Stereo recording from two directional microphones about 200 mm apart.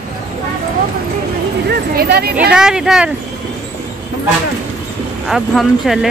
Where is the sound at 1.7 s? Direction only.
50° right (ahead or behind).